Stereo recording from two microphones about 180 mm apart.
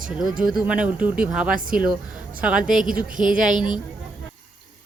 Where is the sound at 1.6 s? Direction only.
50° right (ahead or behind).